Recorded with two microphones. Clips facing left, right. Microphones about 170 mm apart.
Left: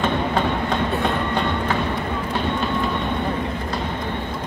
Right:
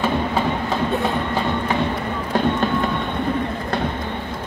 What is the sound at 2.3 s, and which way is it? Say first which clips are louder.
Run: right 7 dB; 45° right (ahead or behind).